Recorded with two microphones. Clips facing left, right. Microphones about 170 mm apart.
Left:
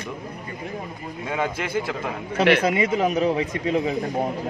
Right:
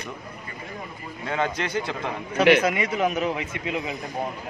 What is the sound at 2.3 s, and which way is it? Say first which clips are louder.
A man's voice: even; 30° left (ahead or behind).